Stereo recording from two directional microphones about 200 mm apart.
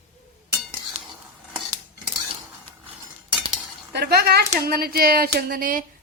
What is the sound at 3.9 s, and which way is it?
Speech, 50° right (ahead or behind).